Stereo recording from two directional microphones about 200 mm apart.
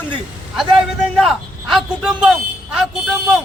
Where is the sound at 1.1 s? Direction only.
Centre (ahead or behind).